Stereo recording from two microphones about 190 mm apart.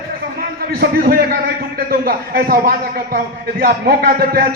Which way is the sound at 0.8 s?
55° right (ahead or behind).